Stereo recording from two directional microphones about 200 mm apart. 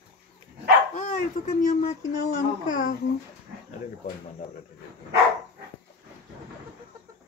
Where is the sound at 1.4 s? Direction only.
40° left (ahead or behind).